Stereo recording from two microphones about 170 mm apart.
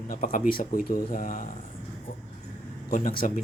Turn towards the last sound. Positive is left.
turn(degrees=55)  # may be behind; listen again after turning